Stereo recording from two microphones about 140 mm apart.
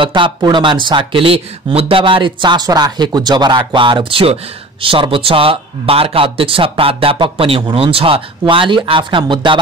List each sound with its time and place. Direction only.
0.0 s speech: 35° right (ahead or behind)